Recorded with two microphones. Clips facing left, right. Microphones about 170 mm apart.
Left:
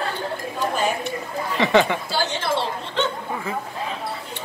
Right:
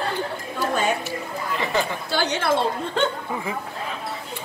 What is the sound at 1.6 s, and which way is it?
Speech, 80° left.